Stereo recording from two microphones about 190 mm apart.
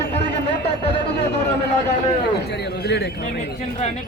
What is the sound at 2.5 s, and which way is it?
Speech, 60° left (ahead or behind).